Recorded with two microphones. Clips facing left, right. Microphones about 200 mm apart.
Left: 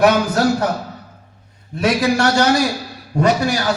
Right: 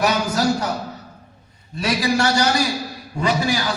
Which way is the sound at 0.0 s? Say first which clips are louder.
Left 5 dB; 55° left (ahead or behind).